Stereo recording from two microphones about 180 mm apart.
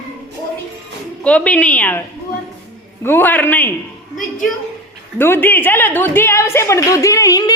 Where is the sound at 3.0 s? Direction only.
10° left (ahead or behind).